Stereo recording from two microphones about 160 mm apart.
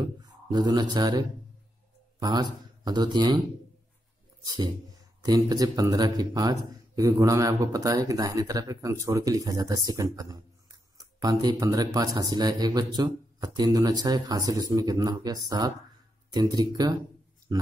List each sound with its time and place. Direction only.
0.2 s speech: 25° right (ahead or behind)
5.2 s a man's voice: 25° right (ahead or behind)